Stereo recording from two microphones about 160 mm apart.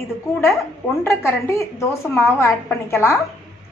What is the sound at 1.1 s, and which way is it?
A woman's voice, 15° left (ahead or behind).